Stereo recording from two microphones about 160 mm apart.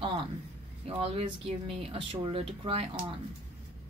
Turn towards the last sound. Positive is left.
turn(degrees=-40)  # may be behind; listen again after turning